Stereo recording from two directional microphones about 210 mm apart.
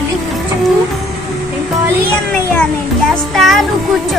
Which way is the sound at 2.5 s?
5° left (ahead or behind).